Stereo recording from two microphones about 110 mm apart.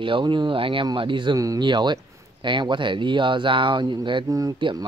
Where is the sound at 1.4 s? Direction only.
30° right (ahead or behind).